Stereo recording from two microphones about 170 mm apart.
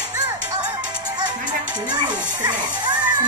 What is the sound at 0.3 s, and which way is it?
Music, 10° right (ahead or behind).